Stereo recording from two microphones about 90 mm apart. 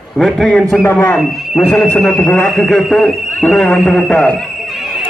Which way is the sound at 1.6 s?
25° left (ahead or behind).